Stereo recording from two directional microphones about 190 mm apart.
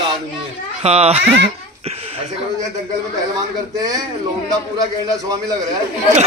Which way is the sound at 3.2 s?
20° right (ahead or behind).